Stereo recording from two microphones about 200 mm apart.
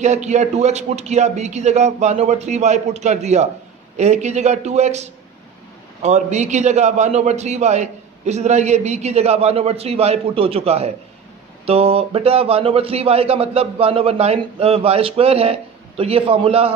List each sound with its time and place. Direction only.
0.0 s a man's voice: 35° right (ahead or behind)